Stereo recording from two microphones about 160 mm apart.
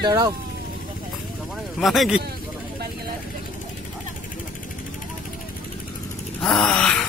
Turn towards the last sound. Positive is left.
turn(degrees=5)  # may be behind; listen again after turning